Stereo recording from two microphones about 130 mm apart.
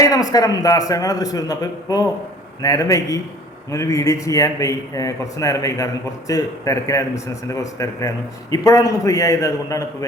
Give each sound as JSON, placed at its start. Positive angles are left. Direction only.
{"t": 0.0, "sound": "a man's voice", "side_deg": 30}